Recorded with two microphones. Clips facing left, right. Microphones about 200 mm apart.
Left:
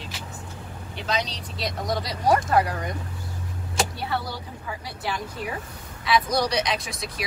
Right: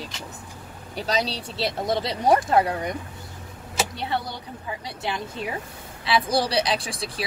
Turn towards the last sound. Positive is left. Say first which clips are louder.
# right 2 dB
turn(degrees=-30)  # may be behind; listen again after turning